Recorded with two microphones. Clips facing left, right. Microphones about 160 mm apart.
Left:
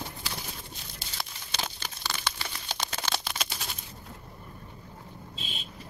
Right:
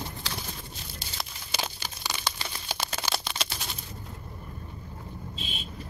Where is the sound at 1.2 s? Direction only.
10° right (ahead or behind).